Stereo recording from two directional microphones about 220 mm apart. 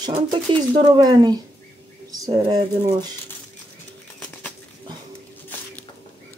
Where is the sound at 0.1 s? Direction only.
20° right (ahead or behind).